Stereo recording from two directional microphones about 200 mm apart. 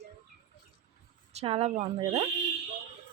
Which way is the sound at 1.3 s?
30° right (ahead or behind).